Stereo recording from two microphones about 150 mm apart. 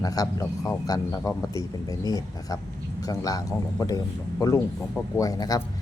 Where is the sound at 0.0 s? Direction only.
25° left (ahead or behind).